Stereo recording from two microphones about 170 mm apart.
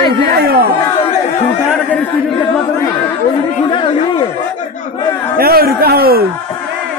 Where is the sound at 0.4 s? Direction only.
65° right (ahead or behind).